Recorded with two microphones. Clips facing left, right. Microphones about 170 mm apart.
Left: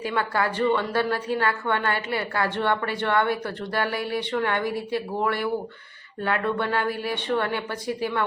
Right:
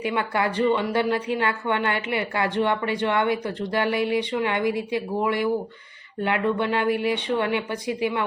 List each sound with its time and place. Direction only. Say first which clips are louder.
0.0 s a woman's voice: right 1 dB; 20° right (ahead or behind)